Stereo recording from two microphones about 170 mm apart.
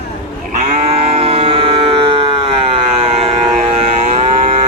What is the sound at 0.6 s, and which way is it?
Moo, 40° right (ahead or behind).